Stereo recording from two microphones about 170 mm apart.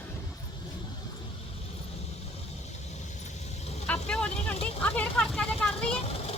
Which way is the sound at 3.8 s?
5° left (ahead or behind).